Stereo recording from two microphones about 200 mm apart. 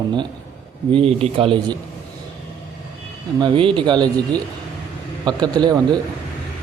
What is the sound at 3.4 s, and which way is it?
Speech, 25° right (ahead or behind).